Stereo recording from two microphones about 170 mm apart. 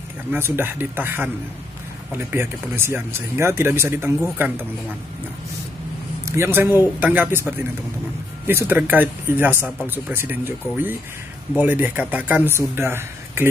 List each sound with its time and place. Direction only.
0.3 s speech: 15° right (ahead or behind)
6.2 s a man's voice: 15° right (ahead or behind)